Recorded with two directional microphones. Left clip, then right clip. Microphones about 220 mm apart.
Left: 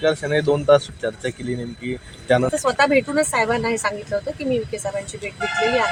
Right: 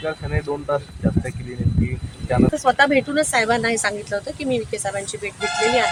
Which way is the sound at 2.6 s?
5° left (ahead or behind).